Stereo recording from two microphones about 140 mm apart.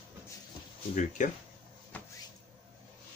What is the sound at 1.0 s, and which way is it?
Speech, 65° left (ahead or behind).